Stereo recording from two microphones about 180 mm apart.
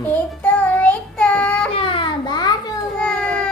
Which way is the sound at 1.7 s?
30° left (ahead or behind).